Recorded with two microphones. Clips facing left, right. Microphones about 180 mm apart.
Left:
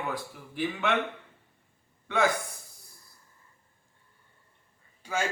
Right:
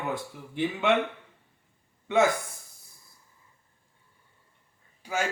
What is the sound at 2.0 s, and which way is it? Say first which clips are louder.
Speech: right 3 dB; 20° right (ahead or behind).